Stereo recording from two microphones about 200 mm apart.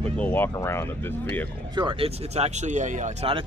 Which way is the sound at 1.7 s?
25° right (ahead or behind).